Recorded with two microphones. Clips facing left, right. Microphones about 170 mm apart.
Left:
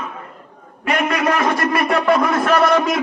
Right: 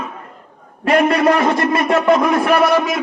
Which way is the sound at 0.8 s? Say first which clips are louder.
Right 5 dB; 30° right (ahead or behind).